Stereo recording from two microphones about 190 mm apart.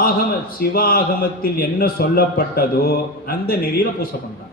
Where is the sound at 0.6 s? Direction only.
50° left (ahead or behind).